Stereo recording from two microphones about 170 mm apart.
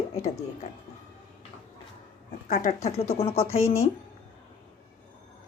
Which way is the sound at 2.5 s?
50° left (ahead or behind).